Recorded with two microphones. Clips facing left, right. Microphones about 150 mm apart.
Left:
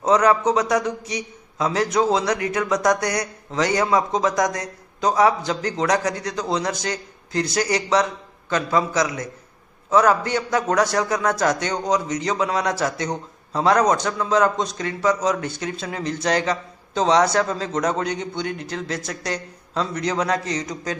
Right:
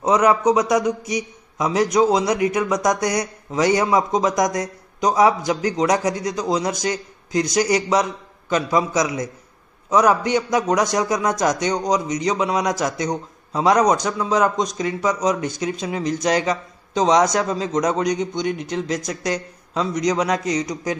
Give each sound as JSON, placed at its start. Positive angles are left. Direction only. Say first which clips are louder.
{"t": 0.0, "sound": "a man's voice", "louder": "right 1 dB", "side_deg": -15}